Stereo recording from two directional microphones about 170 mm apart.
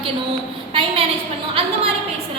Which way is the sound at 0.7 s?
30° right (ahead or behind).